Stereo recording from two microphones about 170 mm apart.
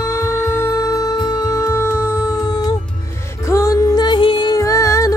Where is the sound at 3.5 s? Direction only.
20° left (ahead or behind).